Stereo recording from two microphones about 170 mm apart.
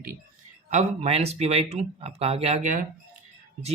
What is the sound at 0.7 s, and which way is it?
Speech, 40° right (ahead or behind).